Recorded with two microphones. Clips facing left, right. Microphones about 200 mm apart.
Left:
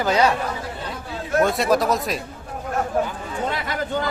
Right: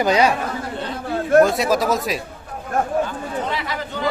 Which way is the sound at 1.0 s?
55° right (ahead or behind).